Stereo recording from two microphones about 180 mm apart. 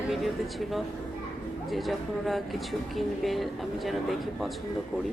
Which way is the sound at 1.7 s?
Centre (ahead or behind).